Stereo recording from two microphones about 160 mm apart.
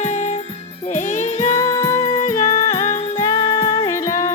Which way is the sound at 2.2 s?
50° left (ahead or behind).